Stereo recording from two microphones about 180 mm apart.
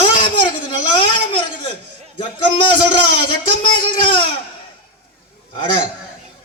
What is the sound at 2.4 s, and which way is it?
Speech, 25° left (ahead or behind).